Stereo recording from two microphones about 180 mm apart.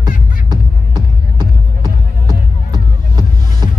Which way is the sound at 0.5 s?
25° right (ahead or behind).